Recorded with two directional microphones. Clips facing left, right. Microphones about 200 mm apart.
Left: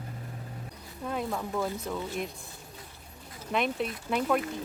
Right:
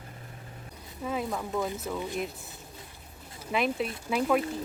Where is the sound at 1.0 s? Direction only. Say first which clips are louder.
Right 1 dB; centre (ahead or behind).